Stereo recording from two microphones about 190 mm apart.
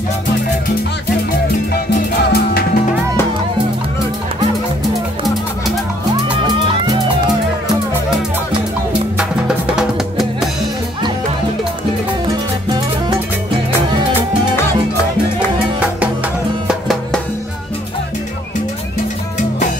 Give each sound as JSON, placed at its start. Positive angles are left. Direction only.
{"t": 2.3, "sound": "music", "side_deg": 55}
{"t": 6.2, "sound": "music", "side_deg": -25}
{"t": 9.8, "sound": "music", "side_deg": 0}
{"t": 12.3, "sound": "music", "side_deg": -20}
{"t": 16.6, "sound": "music", "side_deg": 0}